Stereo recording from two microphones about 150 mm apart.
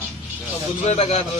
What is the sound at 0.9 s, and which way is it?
Speech, 45° left (ahead or behind).